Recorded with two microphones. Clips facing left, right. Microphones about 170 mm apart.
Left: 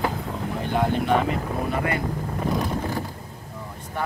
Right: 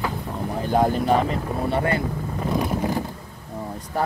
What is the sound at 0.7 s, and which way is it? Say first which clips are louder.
Speech: right 3 dB; 40° right (ahead or behind).